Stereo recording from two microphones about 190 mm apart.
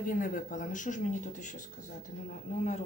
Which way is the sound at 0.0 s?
45° left (ahead or behind).